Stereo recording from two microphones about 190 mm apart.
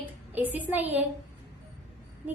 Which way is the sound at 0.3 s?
10° right (ahead or behind).